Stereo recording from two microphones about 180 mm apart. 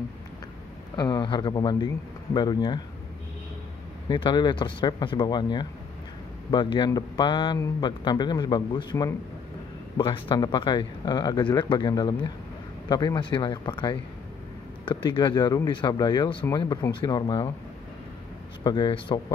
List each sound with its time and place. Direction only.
0.9 s speech: 25° left (ahead or behind)
4.1 s speech: 25° left (ahead or behind)
18.6 s speech: 25° left (ahead or behind)